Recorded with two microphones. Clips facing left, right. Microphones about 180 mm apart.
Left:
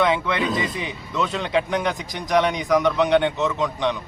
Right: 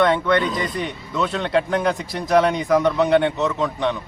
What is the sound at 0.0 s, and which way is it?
Speech, 5° left (ahead or behind).